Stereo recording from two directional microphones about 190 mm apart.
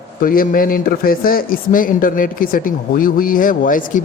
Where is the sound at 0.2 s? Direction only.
50° left (ahead or behind).